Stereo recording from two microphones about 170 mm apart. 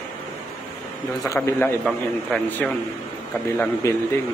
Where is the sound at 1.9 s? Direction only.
5° left (ahead or behind).